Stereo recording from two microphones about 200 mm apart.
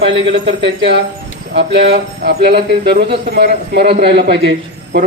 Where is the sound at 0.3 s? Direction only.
60° right (ahead or behind).